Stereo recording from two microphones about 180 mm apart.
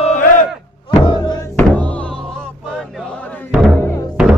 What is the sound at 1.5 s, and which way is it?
Music, 10° left (ahead or behind).